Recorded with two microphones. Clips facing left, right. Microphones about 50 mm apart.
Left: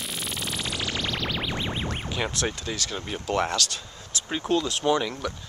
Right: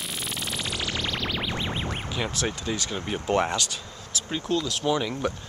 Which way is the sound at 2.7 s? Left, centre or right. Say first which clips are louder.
Right 2 dB; centre.